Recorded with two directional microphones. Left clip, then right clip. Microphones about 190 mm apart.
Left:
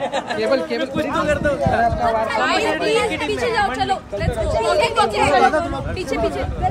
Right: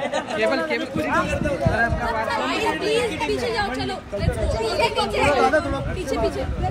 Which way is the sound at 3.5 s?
50° left (ahead or behind).